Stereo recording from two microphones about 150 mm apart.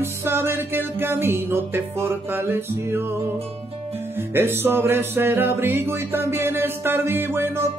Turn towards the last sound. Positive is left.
turn(degrees=-15)  # may be behind; listen again after turning